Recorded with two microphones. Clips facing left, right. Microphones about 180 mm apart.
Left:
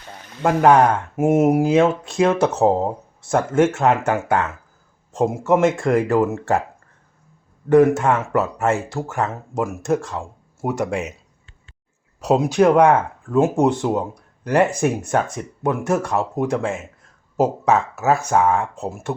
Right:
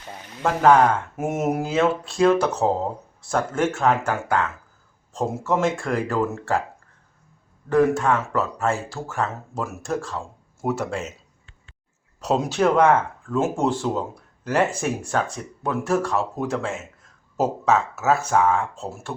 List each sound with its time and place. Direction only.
0.4 s speech: 15° left (ahead or behind)
7.9 s speech: 20° left (ahead or behind)
12.2 s speech: 10° left (ahead or behind)